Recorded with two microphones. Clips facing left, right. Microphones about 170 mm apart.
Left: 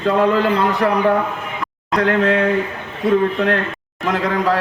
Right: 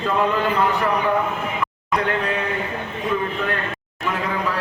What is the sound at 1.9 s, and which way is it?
Speech, 90° left.